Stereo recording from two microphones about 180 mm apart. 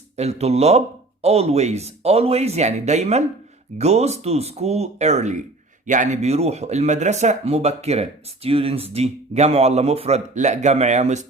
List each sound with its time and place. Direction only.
0.2 s a man's voice: 35° right (ahead or behind)